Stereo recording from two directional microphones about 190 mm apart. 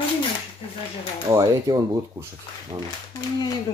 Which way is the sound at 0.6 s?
30° left (ahead or behind).